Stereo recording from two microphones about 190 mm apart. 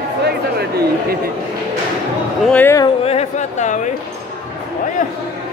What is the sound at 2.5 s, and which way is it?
Speech, 15° left (ahead or behind).